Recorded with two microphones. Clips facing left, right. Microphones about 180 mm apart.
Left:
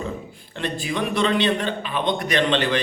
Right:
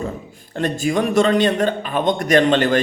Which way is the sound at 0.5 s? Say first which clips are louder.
Right 7 dB; 45° right (ahead or behind).